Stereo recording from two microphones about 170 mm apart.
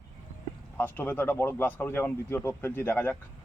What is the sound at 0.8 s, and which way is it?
Speech, 10° left (ahead or behind).